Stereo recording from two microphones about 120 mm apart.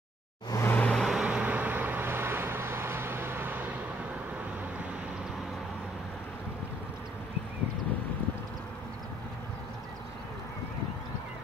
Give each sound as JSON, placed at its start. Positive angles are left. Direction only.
{"t": 0.5, "sound": "vehicle", "side_deg": 25}
{"t": 0.7, "sound": "vehicle", "side_deg": 5}
{"t": 1.2, "sound": "vehicle", "side_deg": -10}